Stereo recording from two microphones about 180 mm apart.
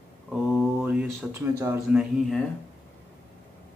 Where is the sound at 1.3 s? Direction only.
15° right (ahead or behind).